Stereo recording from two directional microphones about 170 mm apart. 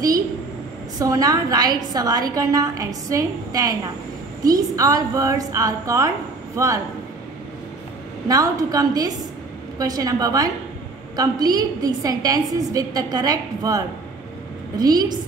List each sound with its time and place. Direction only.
0.9 s a woman's voice: 20° right (ahead or behind)
8.3 s a woman's voice: 20° right (ahead or behind)